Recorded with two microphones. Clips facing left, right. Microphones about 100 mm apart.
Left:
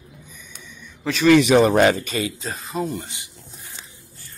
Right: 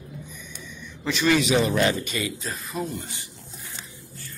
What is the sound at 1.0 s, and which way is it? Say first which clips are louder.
Speech: left 7 dB; 60° left (ahead or behind).